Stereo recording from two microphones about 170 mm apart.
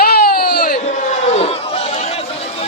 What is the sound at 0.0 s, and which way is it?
Baby cry, 65° left (ahead or behind).